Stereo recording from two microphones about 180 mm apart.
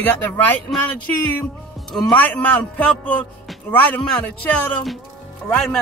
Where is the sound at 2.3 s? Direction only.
10° left (ahead or behind).